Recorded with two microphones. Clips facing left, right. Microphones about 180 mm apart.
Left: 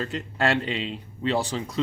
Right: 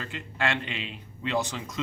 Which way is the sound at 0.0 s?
40° left (ahead or behind).